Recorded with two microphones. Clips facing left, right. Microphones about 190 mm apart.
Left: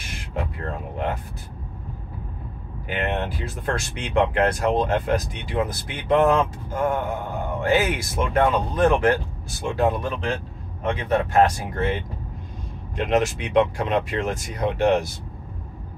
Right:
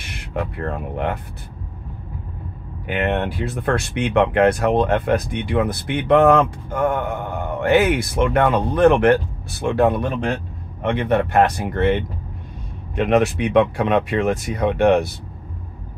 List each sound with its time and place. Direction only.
0.1 s speech: 60° right (ahead or behind)
2.9 s speech: 60° right (ahead or behind)